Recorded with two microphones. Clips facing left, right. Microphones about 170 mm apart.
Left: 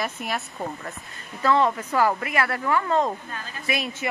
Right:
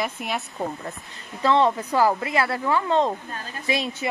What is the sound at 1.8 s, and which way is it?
A woman's voice, 15° right (ahead or behind).